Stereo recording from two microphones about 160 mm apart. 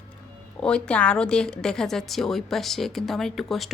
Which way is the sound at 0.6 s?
5° left (ahead or behind).